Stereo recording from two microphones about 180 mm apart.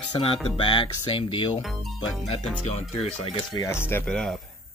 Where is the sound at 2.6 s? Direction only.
35° left (ahead or behind).